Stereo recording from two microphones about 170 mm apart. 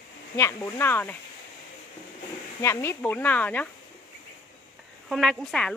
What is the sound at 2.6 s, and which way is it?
Speech, 15° left (ahead or behind).